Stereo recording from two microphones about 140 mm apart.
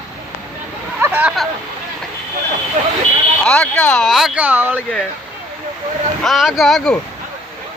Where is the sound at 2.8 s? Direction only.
65° right (ahead or behind).